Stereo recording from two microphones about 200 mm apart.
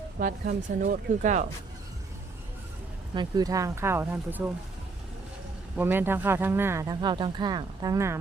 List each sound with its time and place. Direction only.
0.2 s speech: 40° right (ahead or behind)
3.2 s speech: 20° right (ahead or behind)
5.7 s speech: 10° right (ahead or behind)